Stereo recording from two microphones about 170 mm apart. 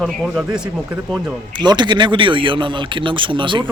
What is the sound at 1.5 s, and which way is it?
A man's voice, 25° right (ahead or behind).